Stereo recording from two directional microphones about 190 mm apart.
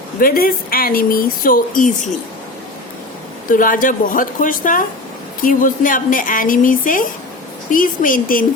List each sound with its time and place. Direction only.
0.2 s a woman's voice: 50° left (ahead or behind)
3.5 s a woman's voice: 45° left (ahead or behind)